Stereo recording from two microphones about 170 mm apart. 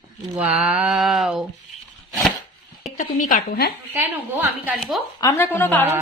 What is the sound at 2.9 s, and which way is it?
Speech, 45° left (ahead or behind).